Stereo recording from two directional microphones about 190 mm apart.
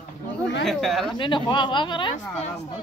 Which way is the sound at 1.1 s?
25° left (ahead or behind).